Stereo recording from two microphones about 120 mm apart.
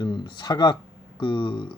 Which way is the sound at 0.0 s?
40° left (ahead or behind).